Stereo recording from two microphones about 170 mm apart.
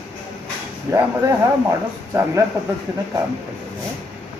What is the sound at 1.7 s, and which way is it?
Speech, 15° right (ahead or behind).